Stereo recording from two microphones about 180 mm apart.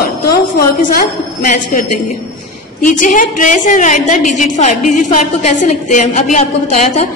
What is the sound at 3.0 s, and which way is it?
A woman's voice, 45° left (ahead or behind).